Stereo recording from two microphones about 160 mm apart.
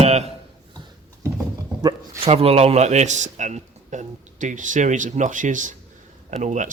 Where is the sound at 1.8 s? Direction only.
40° right (ahead or behind).